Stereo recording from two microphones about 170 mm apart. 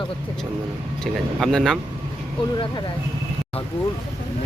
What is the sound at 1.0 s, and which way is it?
Speech, centre (ahead or behind).